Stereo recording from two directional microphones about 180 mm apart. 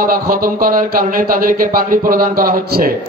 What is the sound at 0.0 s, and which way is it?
Speech, 50° right (ahead or behind).